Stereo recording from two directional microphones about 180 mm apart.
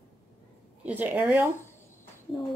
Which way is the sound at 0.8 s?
10° right (ahead or behind).